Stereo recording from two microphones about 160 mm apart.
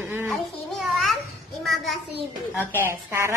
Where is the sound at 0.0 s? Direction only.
10° right (ahead or behind).